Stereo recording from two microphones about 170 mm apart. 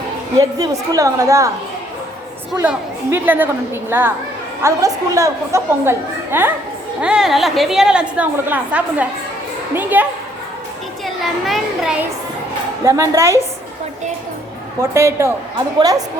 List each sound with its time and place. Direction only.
0.3 s a woman's voice: 20° right (ahead or behind)
2.6 s a child's voice: 10° right (ahead or behind)
12.8 s a child's voice: 15° right (ahead or behind)
14.8 s a child's voice: 15° right (ahead or behind)